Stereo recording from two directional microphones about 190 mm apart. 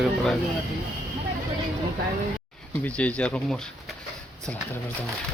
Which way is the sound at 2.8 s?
5° left (ahead or behind).